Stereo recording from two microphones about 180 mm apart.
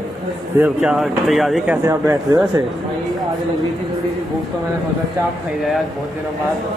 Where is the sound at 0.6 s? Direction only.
5° right (ahead or behind).